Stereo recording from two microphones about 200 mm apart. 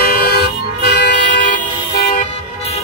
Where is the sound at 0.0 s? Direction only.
50° left (ahead or behind).